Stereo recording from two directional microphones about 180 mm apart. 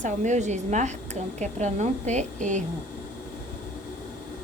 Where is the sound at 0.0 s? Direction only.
40° right (ahead or behind).